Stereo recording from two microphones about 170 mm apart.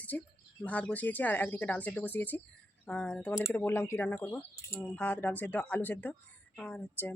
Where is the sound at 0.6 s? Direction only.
5° left (ahead or behind).